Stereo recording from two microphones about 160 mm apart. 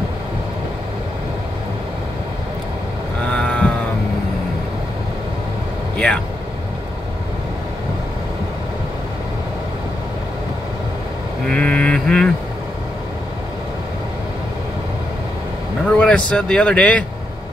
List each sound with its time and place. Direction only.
3.3 s sheep: 5° left (ahead or behind)
5.9 s speech: 5° left (ahead or behind)
11.4 s mantra: 5° left (ahead or behind)
15.8 s vehicle: 5° left (ahead or behind)